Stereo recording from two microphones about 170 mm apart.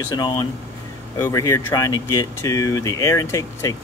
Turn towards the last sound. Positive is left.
turn(degrees=15)  # may be behind; listen again after turning